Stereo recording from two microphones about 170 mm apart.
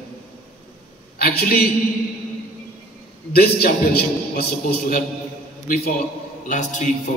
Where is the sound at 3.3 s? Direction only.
65° left (ahead or behind).